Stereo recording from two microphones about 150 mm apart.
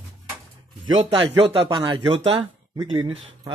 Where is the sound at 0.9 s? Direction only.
35° right (ahead or behind).